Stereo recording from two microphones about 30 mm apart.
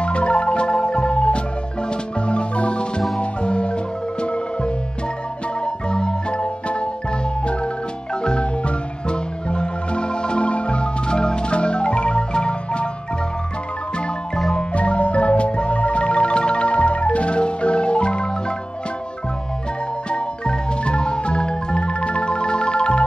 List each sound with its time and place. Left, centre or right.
0.0 s marimba: left
3.2 s music: left
5.9 s marimba: left
14.5 s marimba: left
20.1 s music: left